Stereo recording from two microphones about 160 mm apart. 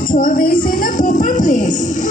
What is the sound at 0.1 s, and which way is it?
Music, 60° left (ahead or behind).